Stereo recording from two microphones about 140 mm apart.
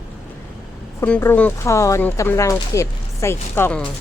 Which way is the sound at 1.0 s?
15° left (ahead or behind).